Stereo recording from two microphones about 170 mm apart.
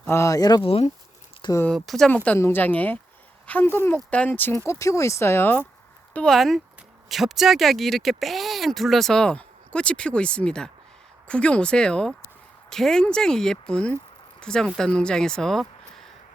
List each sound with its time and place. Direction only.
0.0 s speech: 15° left (ahead or behind)
1.4 s a sound: 25° left (ahead or behind)
1.6 s speech: 5° left (ahead or behind)